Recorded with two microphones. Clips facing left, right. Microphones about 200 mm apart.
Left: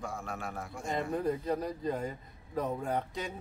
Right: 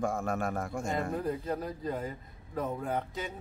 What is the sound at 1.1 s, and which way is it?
Speech, centre (ahead or behind).